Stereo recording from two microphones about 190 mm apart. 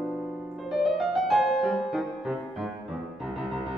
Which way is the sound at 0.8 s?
Centre (ahead or behind).